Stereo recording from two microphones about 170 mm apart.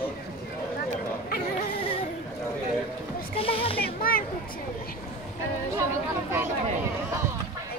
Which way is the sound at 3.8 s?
60° left (ahead or behind).